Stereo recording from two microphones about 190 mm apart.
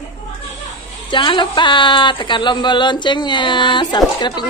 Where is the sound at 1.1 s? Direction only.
25° left (ahead or behind).